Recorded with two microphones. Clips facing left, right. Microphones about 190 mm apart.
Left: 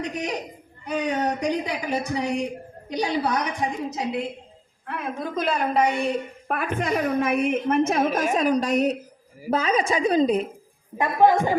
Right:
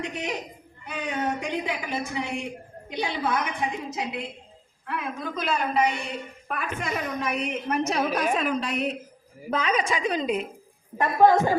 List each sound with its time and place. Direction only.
0.0 s a woman's voice: 40° left (ahead or behind)
10.9 s a woman's voice: 15° left (ahead or behind)